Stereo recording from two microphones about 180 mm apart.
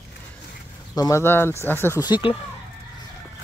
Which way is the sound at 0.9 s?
20° left (ahead or behind).